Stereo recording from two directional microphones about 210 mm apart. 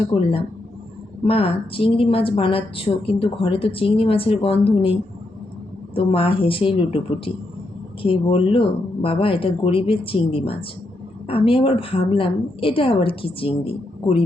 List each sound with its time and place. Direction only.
0.1 s a woman's voice: 25° left (ahead or behind)
8.0 s a woman's voice: 25° left (ahead or behind)